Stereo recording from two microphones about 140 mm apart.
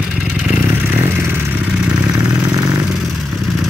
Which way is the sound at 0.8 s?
15° right (ahead or behind).